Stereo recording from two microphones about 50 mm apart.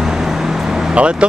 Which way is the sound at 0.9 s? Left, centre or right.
Right.